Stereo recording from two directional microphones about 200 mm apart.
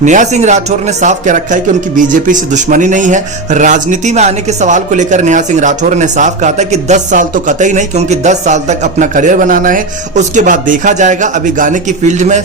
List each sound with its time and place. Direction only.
0.0 s speech: 40° right (ahead or behind)